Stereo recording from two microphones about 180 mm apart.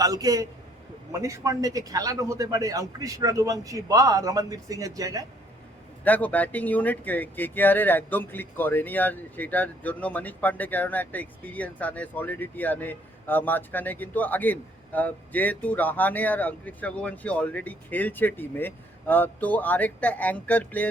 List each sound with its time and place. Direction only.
0.0 s a man's voice: 20° right (ahead or behind)
6.1 s speech: 10° left (ahead or behind)